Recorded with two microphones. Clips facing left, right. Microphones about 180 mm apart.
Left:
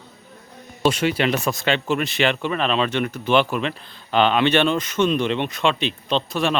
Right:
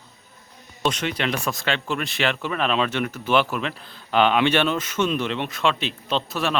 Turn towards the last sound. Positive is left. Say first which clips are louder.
# left 3 dB
turn(degrees=-5)  # may be behind; listen again after turning